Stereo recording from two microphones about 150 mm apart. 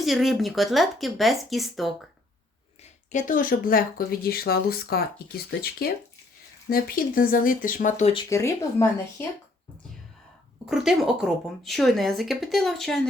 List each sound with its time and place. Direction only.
0.0 s speech: centre (ahead or behind)
3.1 s speech: 60° left (ahead or behind); by 5.9 s 90° left
6.7 s speech: 75° left (ahead or behind); by 8.1 s 55° left (ahead or behind)
8.3 s speech: 20° left (ahead or behind)
10.7 s speech: 5° right (ahead or behind)